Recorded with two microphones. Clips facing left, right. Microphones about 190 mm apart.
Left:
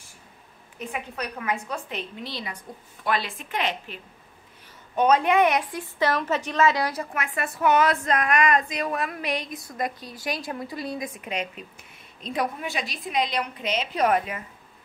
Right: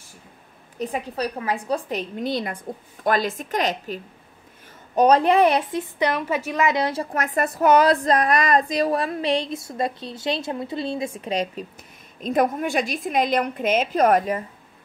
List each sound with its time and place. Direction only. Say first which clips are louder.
0.7 s a woman's voice: right 6 dB; 35° right (ahead or behind)
7.2 s a woman's voice: right 9 dB; 40° right (ahead or behind)
12.2 s a woman's voice: right 7 dB; 50° right (ahead or behind)